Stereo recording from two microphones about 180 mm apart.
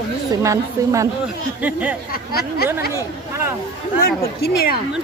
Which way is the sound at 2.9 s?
15° right (ahead or behind).